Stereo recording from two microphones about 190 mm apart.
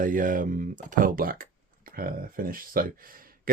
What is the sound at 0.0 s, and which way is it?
Speech, 45° right (ahead or behind).